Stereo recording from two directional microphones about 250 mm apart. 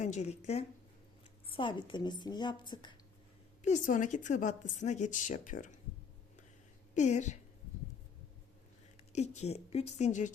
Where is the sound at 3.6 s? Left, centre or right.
Left.